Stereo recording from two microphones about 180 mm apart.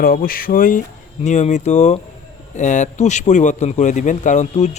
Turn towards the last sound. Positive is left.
turn(degrees=40)  # may be behind; listen again after turning